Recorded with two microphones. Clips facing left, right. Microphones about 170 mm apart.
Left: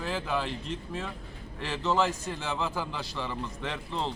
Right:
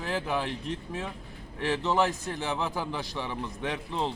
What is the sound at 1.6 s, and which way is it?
A man's voice, 15° right (ahead or behind).